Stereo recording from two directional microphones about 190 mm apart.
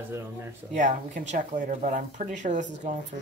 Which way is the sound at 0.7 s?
40° right (ahead or behind).